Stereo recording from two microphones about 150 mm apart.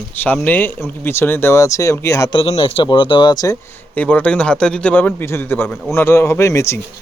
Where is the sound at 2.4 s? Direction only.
35° left (ahead or behind).